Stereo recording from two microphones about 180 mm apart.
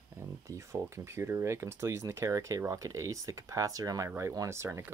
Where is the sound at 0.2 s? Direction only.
15° right (ahead or behind).